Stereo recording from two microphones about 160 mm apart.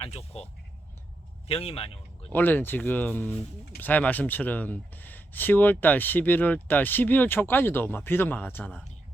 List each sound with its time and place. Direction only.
0.0 s speech: 40° left (ahead or behind)
1.5 s a man's voice: 40° left (ahead or behind)
2.3 s speech: 10° left (ahead or behind)